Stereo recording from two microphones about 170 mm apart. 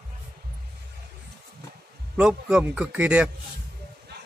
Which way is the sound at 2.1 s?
5° right (ahead or behind).